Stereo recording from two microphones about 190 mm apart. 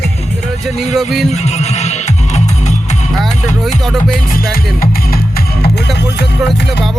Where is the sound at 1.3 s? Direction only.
35° left (ahead or behind).